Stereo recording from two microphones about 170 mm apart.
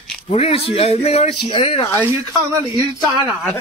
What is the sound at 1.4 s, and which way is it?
Speech, 30° left (ahead or behind).